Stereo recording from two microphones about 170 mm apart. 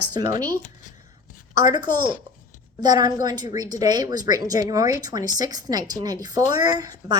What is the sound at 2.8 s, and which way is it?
A woman's voice, 25° right (ahead or behind).